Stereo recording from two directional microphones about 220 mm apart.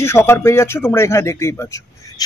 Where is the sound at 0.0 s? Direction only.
10° left (ahead or behind).